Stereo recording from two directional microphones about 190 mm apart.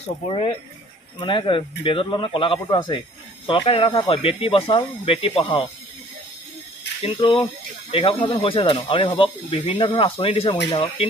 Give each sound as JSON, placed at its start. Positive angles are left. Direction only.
{"t": 1.2, "sound": "speech", "side_deg": 25}
{"t": 7.0, "sound": "speech", "side_deg": 25}